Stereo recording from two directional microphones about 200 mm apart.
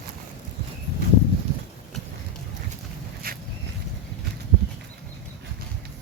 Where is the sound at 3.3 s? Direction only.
50° right (ahead or behind).